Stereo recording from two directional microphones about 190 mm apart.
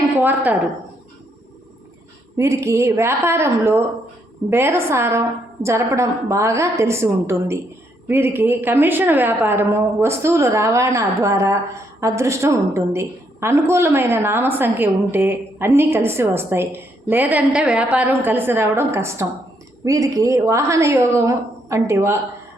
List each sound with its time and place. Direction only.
0.2 s a woman's voice: 10° right (ahead or behind)
2.4 s a woman's voice: 15° right (ahead or behind)